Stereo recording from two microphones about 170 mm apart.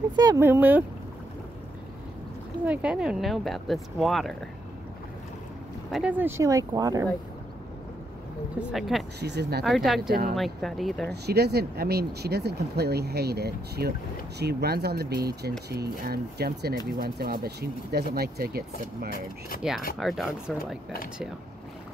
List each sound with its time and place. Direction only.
0.1 s speech: 20° right (ahead or behind)
2.6 s speech: 10° right (ahead or behind)
5.9 s speech: centre (ahead or behind)
6.1 s speech: 15° right (ahead or behind)
8.5 s speech: centre (ahead or behind)
9.2 s speech: 80° right
9.7 s speech: centre (ahead or behind)
11.1 s speech: 75° right (ahead or behind)
19.0 s speech: 60° left (ahead or behind)
20.0 s speech: centre (ahead or behind)